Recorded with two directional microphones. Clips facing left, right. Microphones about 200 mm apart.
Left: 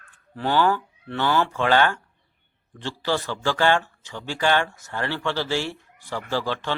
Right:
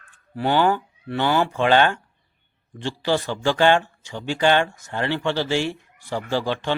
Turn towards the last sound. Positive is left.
turn(degrees=-15)  # may be behind; listen again after turning